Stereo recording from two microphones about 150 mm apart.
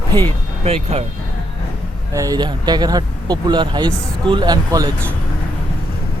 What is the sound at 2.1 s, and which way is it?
Speech, 25° right (ahead or behind).